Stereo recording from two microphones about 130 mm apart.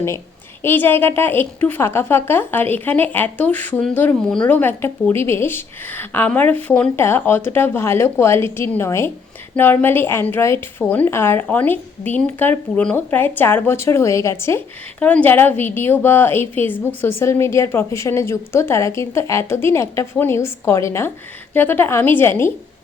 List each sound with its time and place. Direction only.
0.6 s a woman's voice: 15° left (ahead or behind)
14.9 s a woman's voice: 10° left (ahead or behind)